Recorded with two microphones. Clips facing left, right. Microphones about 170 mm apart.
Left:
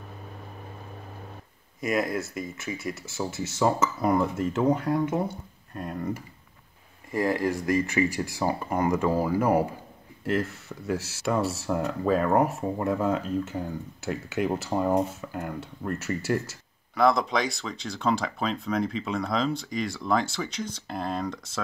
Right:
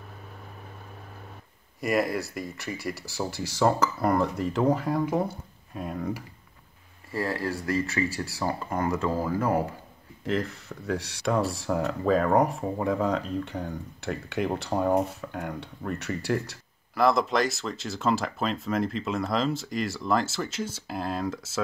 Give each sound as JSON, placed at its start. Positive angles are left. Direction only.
{"t": 1.8, "sound": "speech", "side_deg": 0}
{"t": 7.1, "sound": "speech", "side_deg": 20}
{"t": 10.2, "sound": "speech", "side_deg": 5}